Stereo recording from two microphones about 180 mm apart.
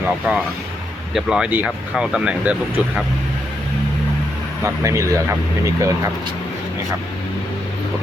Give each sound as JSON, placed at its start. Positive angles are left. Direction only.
{"t": 0.3, "sound": "speech", "side_deg": 0}
{"t": 4.6, "sound": "speech", "side_deg": -15}